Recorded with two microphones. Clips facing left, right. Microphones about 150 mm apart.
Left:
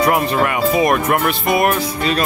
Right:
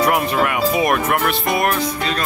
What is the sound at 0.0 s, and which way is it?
Speech, 5° right (ahead or behind).